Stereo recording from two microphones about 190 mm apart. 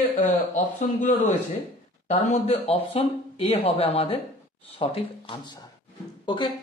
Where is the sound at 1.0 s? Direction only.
40° left (ahead or behind); by 5.6 s 25° left (ahead or behind).